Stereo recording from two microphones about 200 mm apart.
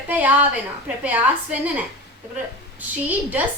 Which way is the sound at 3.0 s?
10° right (ahead or behind).